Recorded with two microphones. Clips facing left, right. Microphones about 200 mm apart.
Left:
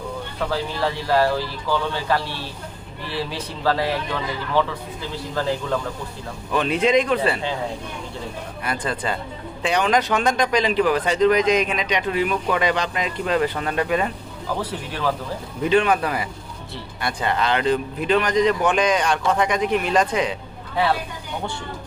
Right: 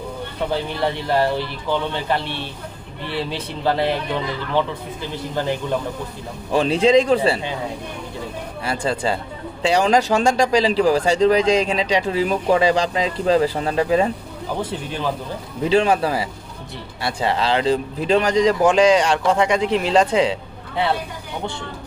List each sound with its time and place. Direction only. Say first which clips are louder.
0.5 s speech: right 2 dB; 20° right (ahead or behind)
3.6 s speech: right 2 dB; 20° right (ahead or behind)
6.5 s speech: right 4 dB; 30° right (ahead or behind)
8.6 s speech: right 4 dB; 30° right (ahead or behind)